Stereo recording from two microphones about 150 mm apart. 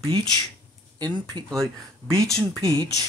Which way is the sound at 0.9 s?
30° right (ahead or behind).